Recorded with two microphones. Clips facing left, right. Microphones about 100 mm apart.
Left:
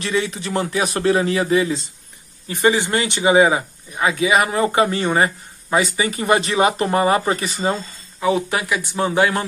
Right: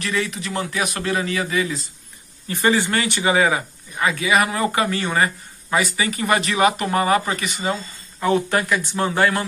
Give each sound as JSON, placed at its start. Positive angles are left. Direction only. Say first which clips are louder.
{"t": 0.0, "sound": "speech", "louder": "left 3 dB", "side_deg": 30}
{"t": 2.4, "sound": "speech", "louder": "left 2 dB", "side_deg": 20}
{"t": 8.2, "sound": "speech", "louder": "even", "side_deg": 10}